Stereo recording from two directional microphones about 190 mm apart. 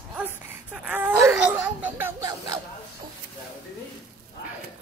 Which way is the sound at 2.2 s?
20° right (ahead or behind).